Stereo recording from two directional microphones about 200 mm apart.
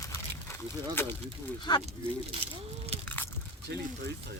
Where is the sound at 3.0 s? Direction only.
10° left (ahead or behind).